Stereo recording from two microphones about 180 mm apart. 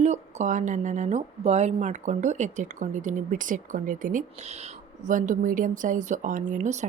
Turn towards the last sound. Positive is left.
turn(degrees=-40)  # may be behind; listen again after turning